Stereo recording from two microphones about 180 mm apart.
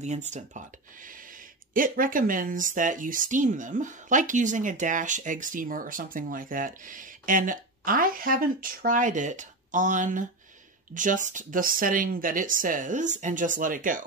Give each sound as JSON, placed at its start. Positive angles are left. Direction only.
{"t": 0.0, "sound": "speech", "side_deg": -40}
{"t": 1.7, "sound": "speech", "side_deg": -50}